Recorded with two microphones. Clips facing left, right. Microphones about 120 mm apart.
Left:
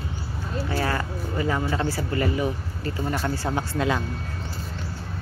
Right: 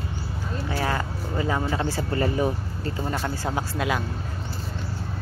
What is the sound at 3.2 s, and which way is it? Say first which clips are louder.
Speech: left 1 dB; 15° right (ahead or behind).